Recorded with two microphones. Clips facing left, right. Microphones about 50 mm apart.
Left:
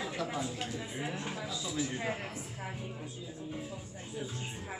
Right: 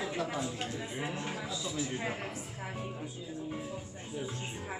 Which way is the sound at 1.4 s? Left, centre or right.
Centre.